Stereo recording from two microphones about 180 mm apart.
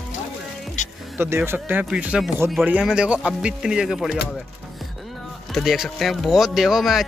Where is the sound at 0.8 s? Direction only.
40° left (ahead or behind).